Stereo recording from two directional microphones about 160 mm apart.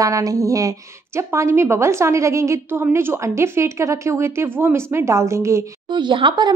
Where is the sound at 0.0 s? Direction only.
20° right (ahead or behind).